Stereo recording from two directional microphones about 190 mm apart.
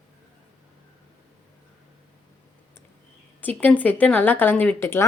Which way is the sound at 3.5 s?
10° left (ahead or behind).